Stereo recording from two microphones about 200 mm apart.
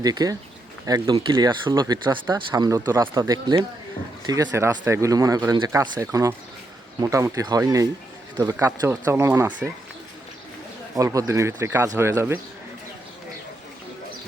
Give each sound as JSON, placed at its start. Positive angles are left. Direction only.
{"t": 0.0, "sound": "speech", "side_deg": -20}
{"t": 10.9, "sound": "speech", "side_deg": -15}